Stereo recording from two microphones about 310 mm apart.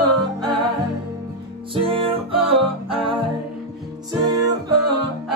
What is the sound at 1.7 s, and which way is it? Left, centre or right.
Music, centre.